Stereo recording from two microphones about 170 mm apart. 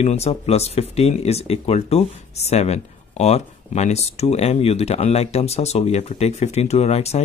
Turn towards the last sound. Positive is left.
turn(degrees=40)  # may be behind; listen again after turning